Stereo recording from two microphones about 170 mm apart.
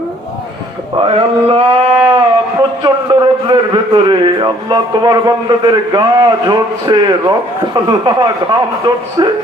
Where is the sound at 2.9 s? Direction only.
25° right (ahead or behind).